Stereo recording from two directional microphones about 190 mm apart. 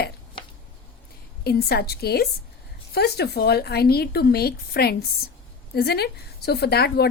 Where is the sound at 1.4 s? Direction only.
55° left (ahead or behind).